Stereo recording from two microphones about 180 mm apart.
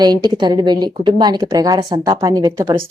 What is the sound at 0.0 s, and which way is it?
A woman's voice, 25° right (ahead or behind).